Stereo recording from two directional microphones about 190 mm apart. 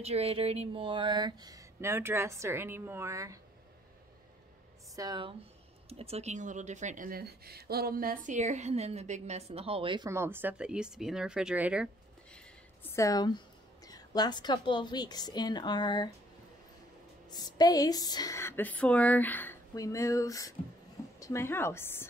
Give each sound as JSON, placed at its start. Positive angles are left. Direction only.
{"t": 0.0, "sound": "speech", "side_deg": -30}
{"t": 4.9, "sound": "speech", "side_deg": -20}
{"t": 5.9, "sound": "speech", "side_deg": -30}
{"t": 12.3, "sound": "a sound", "side_deg": 10}
{"t": 13.8, "sound": "a woman's voice", "side_deg": 20}
{"t": 17.3, "sound": "a woman's voice", "side_deg": 20}